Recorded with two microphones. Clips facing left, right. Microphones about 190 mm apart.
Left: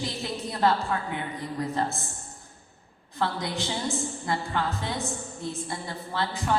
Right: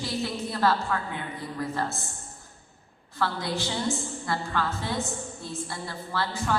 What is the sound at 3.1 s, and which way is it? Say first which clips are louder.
A woman's voice: even; 20° left (ahead or behind).